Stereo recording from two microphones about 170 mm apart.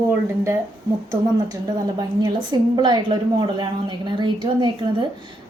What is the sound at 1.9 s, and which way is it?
A woman's voice, 25° right (ahead or behind).